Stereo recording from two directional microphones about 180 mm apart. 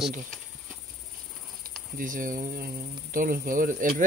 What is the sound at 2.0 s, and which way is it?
Speech, 50° right (ahead or behind).